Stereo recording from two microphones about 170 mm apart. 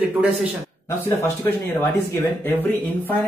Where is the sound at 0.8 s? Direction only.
15° left (ahead or behind).